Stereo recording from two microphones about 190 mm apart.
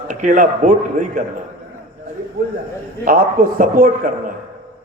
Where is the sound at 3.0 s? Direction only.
45° right (ahead or behind).